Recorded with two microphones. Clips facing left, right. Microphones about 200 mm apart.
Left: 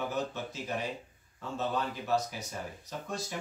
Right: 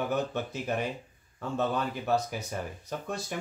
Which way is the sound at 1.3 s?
60° right (ahead or behind).